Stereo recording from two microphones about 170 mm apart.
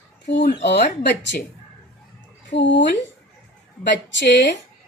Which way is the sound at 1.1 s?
85° left.